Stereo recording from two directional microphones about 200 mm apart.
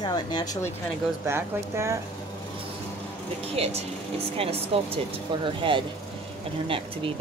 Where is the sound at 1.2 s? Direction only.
15° right (ahead or behind).